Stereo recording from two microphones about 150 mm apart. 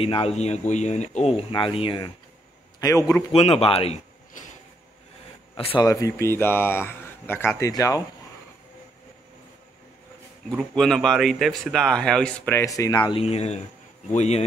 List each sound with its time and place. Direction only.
0.0 s speech: 40° left (ahead or behind)
1.8 s a man's voice: 35° left (ahead or behind)
3.3 s speech: 40° left (ahead or behind)
5.6 s speech: 40° left (ahead or behind)
5.9 s speech: 20° left (ahead or behind)
10.5 s speech: 5° left (ahead or behind)
12.5 s speech: 20° left (ahead or behind); by 14.4 s 50° left (ahead or behind)